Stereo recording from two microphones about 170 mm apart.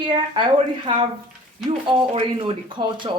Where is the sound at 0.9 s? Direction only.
30° right (ahead or behind).